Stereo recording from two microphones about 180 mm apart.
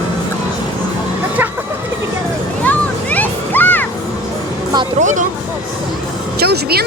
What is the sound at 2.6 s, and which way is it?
Music, 10° left (ahead or behind).